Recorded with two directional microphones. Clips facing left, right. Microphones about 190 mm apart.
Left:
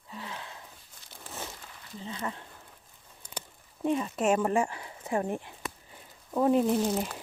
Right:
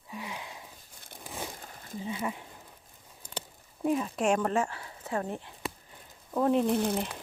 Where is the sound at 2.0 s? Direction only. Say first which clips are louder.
Right 3 dB; 10° right (ahead or behind).